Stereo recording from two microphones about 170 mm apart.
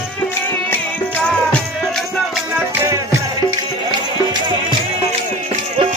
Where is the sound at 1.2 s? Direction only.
5° left (ahead or behind).